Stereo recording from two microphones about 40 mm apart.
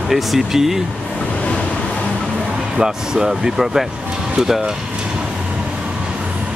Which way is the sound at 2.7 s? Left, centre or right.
Centre.